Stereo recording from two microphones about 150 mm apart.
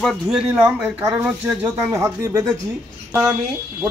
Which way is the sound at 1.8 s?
20° right (ahead or behind).